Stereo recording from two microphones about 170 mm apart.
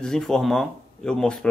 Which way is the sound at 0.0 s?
5° left (ahead or behind).